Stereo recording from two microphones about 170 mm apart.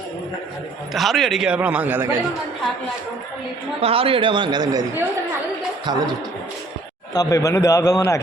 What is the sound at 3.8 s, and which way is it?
A man's voice, 35° right (ahead or behind).